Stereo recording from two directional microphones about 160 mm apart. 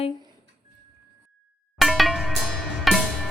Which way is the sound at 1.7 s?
Centre (ahead or behind).